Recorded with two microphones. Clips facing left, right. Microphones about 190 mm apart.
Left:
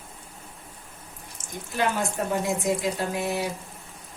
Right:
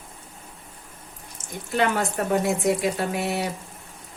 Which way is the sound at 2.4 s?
70° right (ahead or behind).